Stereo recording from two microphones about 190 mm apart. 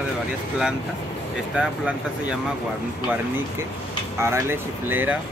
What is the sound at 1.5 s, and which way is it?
Speech, 5° right (ahead or behind).